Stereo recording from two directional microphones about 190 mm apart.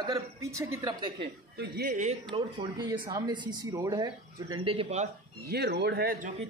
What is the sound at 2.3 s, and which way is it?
Speech, 25° right (ahead or behind).